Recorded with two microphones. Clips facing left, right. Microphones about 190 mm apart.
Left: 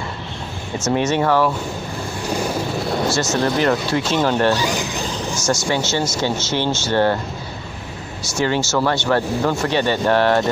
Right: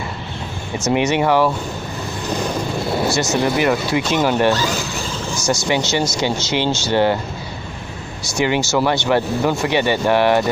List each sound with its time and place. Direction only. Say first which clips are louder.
0.7 s speech: right 1 dB; 15° right (ahead or behind)
2.2 s vehicle: even; 10° left (ahead or behind)
3.0 s speech: right 1 dB; 15° right (ahead or behind)
4.6 s a sound: even; 15° left (ahead or behind)
5.3 s speech: right 2 dB; 15° right (ahead or behind)
8.2 s speech: right 1 dB; 15° right (ahead or behind)